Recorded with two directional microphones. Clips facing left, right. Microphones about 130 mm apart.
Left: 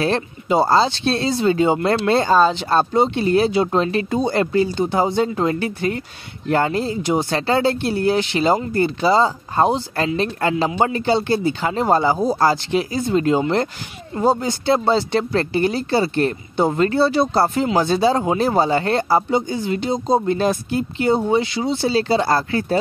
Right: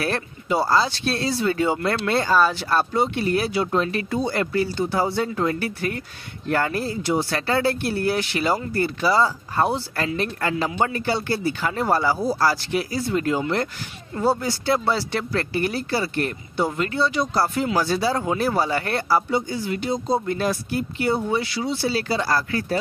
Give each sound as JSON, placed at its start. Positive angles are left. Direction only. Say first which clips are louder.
{"t": 0.0, "sound": "speech", "louder": "left 5 dB", "side_deg": 20}